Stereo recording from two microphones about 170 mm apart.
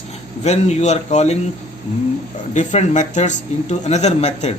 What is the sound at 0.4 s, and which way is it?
Speech, 40° left (ahead or behind).